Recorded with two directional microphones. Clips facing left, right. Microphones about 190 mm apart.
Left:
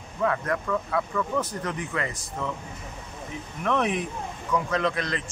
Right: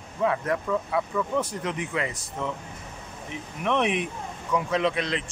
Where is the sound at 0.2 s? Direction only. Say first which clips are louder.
Right 1 dB; 15° right (ahead or behind).